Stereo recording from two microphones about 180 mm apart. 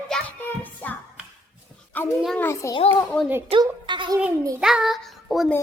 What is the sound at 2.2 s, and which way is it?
Music, 10° left (ahead or behind).